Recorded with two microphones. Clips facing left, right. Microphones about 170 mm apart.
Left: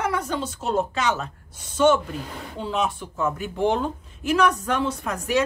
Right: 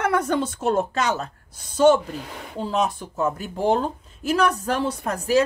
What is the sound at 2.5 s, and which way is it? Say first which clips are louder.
Speech: right 2 dB; 40° right (ahead or behind).